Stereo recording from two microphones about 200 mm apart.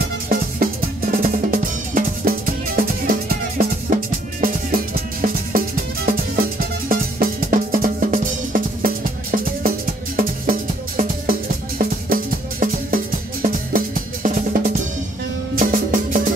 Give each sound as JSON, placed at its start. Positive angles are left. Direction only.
{"t": 0.6, "sound": "music", "side_deg": -45}
{"t": 1.1, "sound": "drum", "side_deg": -40}
{"t": 6.9, "sound": "music", "side_deg": -45}